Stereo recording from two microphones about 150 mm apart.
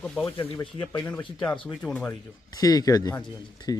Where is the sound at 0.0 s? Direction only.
5° left (ahead or behind).